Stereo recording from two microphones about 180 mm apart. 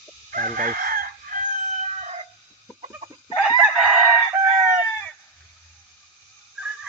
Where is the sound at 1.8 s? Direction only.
40° right (ahead or behind).